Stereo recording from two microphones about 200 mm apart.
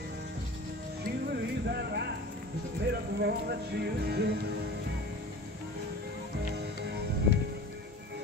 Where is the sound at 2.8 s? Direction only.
55° right (ahead or behind).